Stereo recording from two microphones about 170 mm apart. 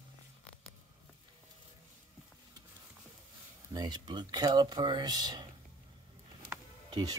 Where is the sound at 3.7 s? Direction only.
25° right (ahead or behind).